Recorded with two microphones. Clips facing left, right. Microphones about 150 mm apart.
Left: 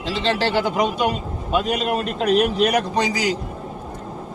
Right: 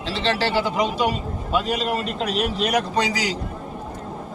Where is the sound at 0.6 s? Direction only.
55° left (ahead or behind).